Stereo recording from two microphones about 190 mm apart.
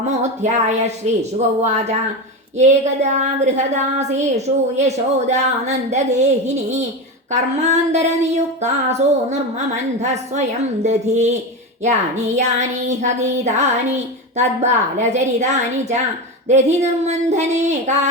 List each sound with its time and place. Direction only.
0.2 s child singing: 40° right (ahead or behind)
7.3 s child singing: 40° right (ahead or behind)